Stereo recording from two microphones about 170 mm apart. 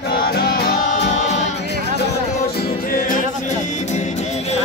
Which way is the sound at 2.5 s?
60° left (ahead or behind).